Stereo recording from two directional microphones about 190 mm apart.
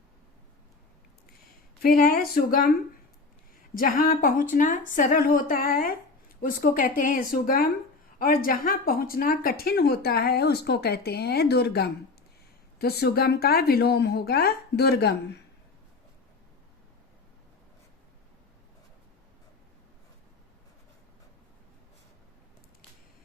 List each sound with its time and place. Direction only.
1.8 s speech: 50° left (ahead or behind)
3.8 s speech: 50° left (ahead or behind)